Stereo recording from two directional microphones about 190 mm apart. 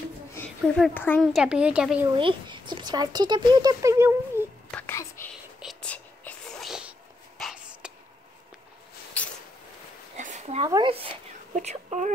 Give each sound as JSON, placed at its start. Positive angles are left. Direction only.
{"t": 0.7, "sound": "speech", "side_deg": 5}
{"t": 1.2, "sound": "speech", "side_deg": -5}
{"t": 2.1, "sound": "speech", "side_deg": -25}
{"t": 4.6, "sound": "whispering", "side_deg": 10}
{"t": 10.1, "sound": "a sound", "side_deg": -40}
{"t": 10.7, "sound": "speech", "side_deg": -25}
{"t": 11.5, "sound": "a sound", "side_deg": -40}